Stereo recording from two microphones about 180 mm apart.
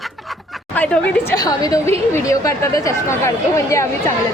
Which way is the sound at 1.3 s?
20° left (ahead or behind).